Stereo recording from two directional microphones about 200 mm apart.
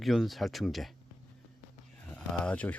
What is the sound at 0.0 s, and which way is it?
Speech, centre (ahead or behind).